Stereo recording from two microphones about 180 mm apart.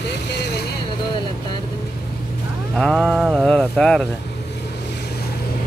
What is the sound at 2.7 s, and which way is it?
Speech, centre (ahead or behind).